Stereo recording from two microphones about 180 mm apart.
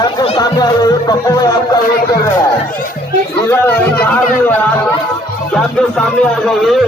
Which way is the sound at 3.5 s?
10° left (ahead or behind).